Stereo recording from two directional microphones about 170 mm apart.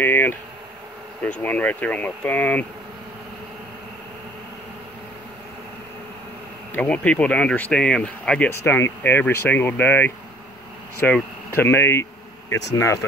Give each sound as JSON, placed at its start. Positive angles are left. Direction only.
{"t": 0.0, "sound": "speech", "side_deg": 10}
{"t": 6.7, "sound": "speech", "side_deg": 10}